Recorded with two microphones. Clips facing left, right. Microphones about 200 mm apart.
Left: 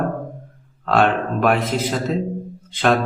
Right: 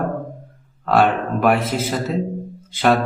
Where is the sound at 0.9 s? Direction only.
5° right (ahead or behind).